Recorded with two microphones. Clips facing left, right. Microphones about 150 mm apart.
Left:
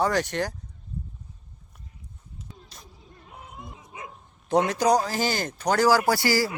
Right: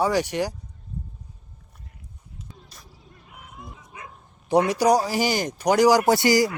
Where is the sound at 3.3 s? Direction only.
25° left (ahead or behind).